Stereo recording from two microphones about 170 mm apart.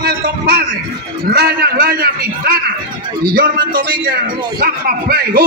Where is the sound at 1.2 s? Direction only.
60° right (ahead or behind).